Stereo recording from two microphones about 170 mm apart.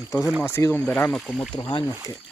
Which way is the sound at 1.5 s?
30° left (ahead or behind).